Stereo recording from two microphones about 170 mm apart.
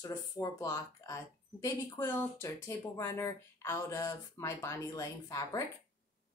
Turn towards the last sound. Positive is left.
turn(degrees=20)  # may be behind; listen again after turning